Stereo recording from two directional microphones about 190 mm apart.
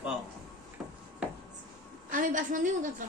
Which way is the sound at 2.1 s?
45° right (ahead or behind).